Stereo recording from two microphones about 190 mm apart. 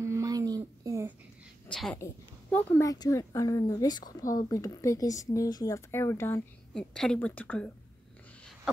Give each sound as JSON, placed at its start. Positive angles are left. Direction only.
{"t": 0.0, "sound": "a sound", "side_deg": -15}
{"t": 1.7, "sound": "a woman's voice", "side_deg": 5}
{"t": 2.5, "sound": "speech", "side_deg": 15}